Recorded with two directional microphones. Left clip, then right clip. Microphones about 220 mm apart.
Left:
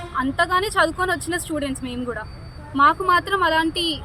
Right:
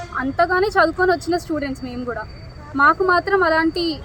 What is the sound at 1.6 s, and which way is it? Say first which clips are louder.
Speech: even; 55° left (ahead or behind).